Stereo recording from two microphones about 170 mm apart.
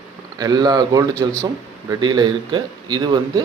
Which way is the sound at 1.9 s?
25° right (ahead or behind).